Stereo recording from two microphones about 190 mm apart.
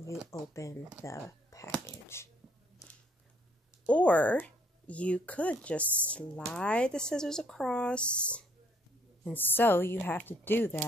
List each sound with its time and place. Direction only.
0.3 s speech: 15° left (ahead or behind)
1.0 s a sound: 15° left (ahead or behind)
3.8 s speech: 5° left (ahead or behind)